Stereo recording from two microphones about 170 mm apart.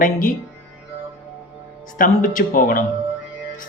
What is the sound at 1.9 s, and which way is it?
Speech, 50° left (ahead or behind).